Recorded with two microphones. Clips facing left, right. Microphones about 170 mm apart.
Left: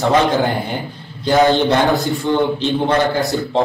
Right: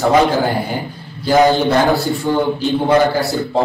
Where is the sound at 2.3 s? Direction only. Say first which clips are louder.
Even; 10° right (ahead or behind).